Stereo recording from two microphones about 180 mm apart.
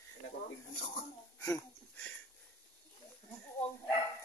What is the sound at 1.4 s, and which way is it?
Wheeze, 15° left (ahead or behind).